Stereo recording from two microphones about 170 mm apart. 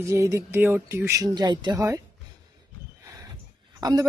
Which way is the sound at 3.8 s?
20° right (ahead or behind).